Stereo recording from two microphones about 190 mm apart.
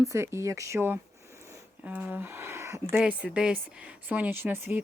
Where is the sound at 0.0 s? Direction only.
15° right (ahead or behind).